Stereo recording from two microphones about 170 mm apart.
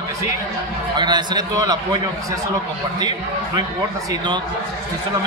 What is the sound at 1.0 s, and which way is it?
A man's voice, 25° right (ahead or behind).